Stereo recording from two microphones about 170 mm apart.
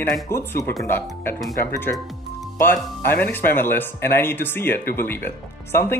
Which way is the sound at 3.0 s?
10° left (ahead or behind).